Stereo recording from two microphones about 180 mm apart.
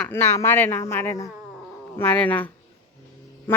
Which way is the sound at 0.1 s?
10° left (ahead or behind).